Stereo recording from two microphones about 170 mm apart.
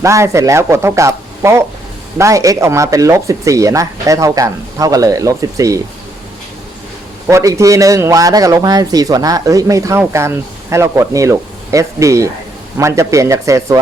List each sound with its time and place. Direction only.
0.0 s speech: 15° right (ahead or behind)
7.3 s speech: 15° right (ahead or behind)